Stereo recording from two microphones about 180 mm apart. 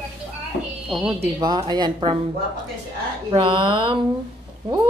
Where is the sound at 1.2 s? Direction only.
25° right (ahead or behind).